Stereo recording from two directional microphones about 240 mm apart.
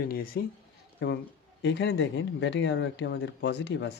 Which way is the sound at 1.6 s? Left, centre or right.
Left.